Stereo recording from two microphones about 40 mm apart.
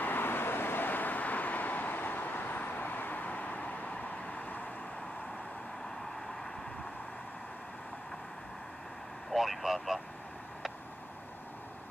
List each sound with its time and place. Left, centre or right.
0.0 s vehicle: left
9.3 s speech: centre